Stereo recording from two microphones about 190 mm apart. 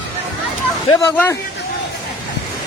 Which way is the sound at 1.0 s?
10° left (ahead or behind).